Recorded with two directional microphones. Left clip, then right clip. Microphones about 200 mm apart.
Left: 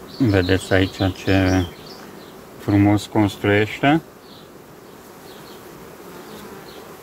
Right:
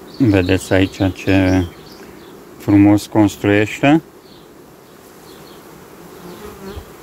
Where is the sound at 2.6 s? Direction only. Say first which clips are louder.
Right 6 dB; 25° right (ahead or behind).